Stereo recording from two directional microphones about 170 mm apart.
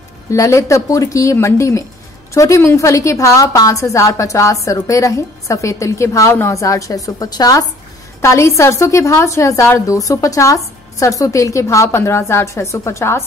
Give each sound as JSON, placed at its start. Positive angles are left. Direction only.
{"t": 0.3, "sound": "a woman's voice", "side_deg": 20}